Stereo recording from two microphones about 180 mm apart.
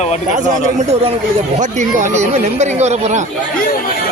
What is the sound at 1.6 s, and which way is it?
Speech, 45° right (ahead or behind).